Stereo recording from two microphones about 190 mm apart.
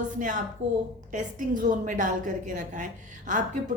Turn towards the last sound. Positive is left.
turn(degrees=-40)  # may be behind; listen again after turning